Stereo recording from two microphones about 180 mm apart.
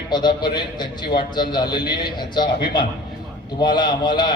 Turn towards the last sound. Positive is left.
turn(degrees=25)  # may be behind; listen again after turning